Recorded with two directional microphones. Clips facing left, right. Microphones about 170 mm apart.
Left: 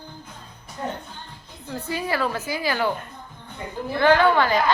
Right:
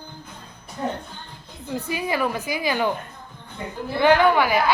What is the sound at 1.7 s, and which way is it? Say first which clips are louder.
A woman's voice: right 1 dB; 15° right (ahead or behind).